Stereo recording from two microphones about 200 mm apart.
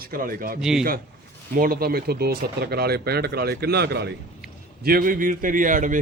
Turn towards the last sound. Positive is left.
turn(degrees=-40)  # may be behind; listen again after turning